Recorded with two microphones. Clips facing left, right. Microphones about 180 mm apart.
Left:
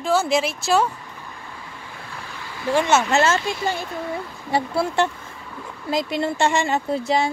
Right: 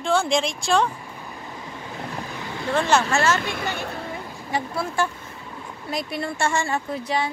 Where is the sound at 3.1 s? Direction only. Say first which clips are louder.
Left 3 dB; 25° left (ahead or behind).